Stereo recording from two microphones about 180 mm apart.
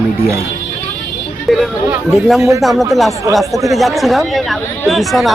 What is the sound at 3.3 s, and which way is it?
Speech, 20° right (ahead or behind).